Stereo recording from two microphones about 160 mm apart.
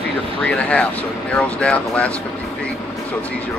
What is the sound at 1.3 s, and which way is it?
Speech, 5° left (ahead or behind).